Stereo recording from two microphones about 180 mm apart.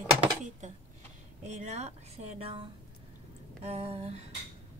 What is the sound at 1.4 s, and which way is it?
A woman's voice, 40° right (ahead or behind).